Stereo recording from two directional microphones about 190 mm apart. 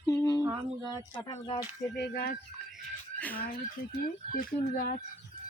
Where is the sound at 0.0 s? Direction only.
20° left (ahead or behind).